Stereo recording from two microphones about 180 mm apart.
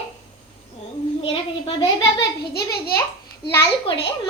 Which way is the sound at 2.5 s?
60° left (ahead or behind).